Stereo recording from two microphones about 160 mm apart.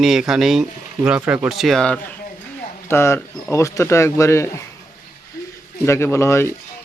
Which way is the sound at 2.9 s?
15° left (ahead or behind).